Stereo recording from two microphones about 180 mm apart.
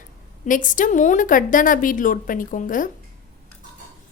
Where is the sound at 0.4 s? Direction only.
45° left (ahead or behind).